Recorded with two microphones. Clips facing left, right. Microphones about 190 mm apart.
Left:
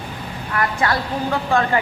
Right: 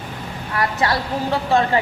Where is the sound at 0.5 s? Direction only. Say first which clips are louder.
Even; 30° right (ahead or behind).